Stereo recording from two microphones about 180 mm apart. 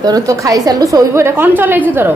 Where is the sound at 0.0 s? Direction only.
20° right (ahead or behind).